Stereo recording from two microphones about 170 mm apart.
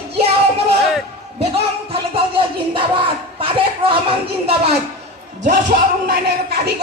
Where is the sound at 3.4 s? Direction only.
30° right (ahead or behind).